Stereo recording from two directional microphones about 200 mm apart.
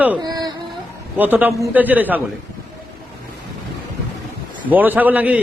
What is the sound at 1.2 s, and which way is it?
A man's voice, 10° right (ahead or behind).